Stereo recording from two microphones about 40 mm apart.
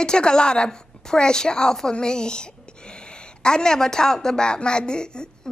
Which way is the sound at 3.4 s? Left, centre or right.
Centre.